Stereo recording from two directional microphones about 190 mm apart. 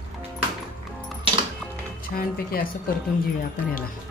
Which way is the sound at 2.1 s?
45° left (ahead or behind).